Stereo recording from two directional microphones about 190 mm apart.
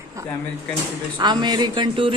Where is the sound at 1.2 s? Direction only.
25° right (ahead or behind).